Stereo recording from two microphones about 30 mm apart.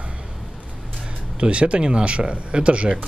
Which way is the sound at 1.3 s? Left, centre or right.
Right.